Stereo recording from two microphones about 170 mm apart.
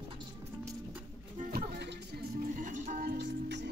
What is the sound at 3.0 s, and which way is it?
Music, 85° right.